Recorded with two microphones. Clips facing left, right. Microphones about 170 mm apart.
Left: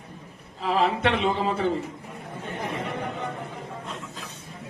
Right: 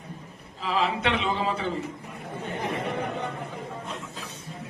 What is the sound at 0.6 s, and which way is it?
A man's voice, 55° left (ahead or behind).